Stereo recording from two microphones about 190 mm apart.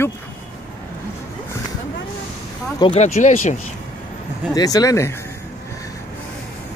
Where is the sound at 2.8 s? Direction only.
35° left (ahead or behind).